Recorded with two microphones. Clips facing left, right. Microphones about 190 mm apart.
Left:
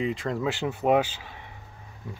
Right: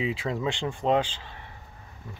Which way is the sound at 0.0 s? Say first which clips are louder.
Left 1 dB; 5° right (ahead or behind).